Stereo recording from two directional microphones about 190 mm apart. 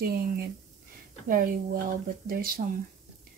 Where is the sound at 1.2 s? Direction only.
45° right (ahead or behind).